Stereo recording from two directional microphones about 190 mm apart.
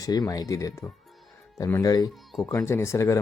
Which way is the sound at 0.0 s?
20° left (ahead or behind).